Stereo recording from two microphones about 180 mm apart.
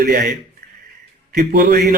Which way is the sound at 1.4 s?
60° right (ahead or behind).